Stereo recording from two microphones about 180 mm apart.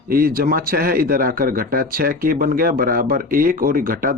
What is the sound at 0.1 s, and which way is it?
Speech, 55° right (ahead or behind).